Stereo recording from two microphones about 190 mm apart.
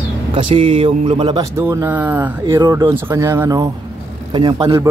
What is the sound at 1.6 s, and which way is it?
Speech, 10° right (ahead or behind).